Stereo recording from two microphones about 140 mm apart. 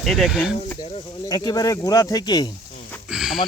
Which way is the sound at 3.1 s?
5° right (ahead or behind).